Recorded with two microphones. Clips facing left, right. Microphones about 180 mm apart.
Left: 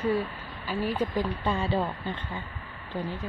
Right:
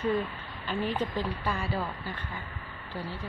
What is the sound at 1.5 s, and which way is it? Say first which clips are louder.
Speech: left 7 dB; 25° left (ahead or behind).